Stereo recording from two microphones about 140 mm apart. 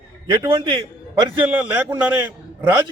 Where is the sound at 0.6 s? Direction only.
35° right (ahead or behind).